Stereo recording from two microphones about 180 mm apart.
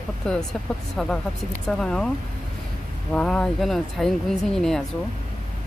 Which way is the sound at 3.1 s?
5° left (ahead or behind).